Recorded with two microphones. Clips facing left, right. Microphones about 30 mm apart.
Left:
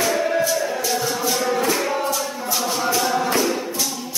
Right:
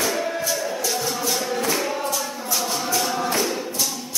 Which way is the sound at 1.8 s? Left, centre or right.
Centre.